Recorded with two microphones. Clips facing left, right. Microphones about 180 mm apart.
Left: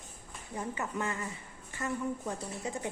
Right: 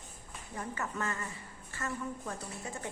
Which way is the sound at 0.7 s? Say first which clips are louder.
Left 1 dB; 15° left (ahead or behind).